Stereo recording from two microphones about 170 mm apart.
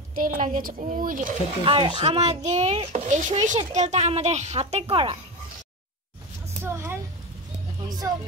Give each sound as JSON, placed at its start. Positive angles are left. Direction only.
{"t": 0.1, "sound": "a woman's voice", "side_deg": -55}
{"t": 1.6, "sound": "a child's voice", "side_deg": -30}
{"t": 6.6, "sound": "a sound", "side_deg": -15}
{"t": 8.0, "sound": "speech", "side_deg": -15}